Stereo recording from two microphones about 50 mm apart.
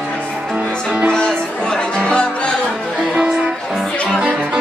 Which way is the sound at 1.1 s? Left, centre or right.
Centre.